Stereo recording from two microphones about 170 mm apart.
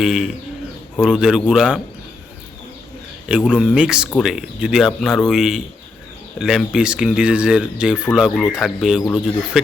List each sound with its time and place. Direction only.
0.0 s speech: 5° right (ahead or behind)
3.2 s speech: 5° right (ahead or behind)